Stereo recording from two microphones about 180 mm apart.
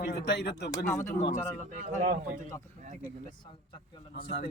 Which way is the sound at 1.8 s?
40° right (ahead or behind).